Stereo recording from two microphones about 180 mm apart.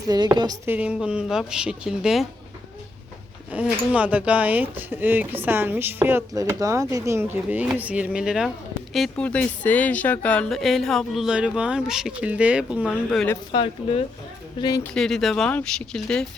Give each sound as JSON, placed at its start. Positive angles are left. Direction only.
{"t": 0.1, "sound": "speech", "side_deg": -25}
{"t": 0.7, "sound": "a woman's voice", "side_deg": -5}
{"t": 3.5, "sound": "speech", "side_deg": -10}
{"t": 12.9, "sound": "a woman's voice", "side_deg": 5}
{"t": 13.3, "sound": "speech", "side_deg": 30}
{"t": 14.9, "sound": "a woman's voice", "side_deg": 0}